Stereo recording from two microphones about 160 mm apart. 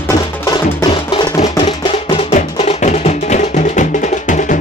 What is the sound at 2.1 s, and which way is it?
Music, 40° left (ahead or behind).